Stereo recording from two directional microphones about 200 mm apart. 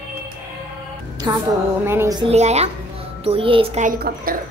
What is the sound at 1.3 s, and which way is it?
Speech, 20° right (ahead or behind).